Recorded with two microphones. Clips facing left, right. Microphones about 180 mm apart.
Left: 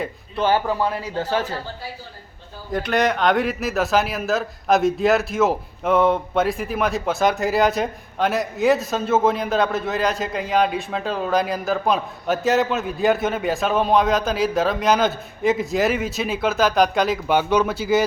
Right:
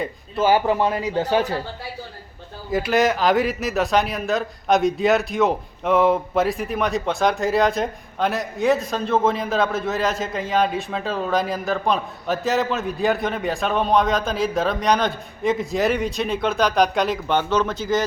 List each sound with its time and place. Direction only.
0.0 s speech: 5° right (ahead or behind)
0.6 s speech: 20° right (ahead or behind)
2.7 s a man's voice: 5° right (ahead or behind)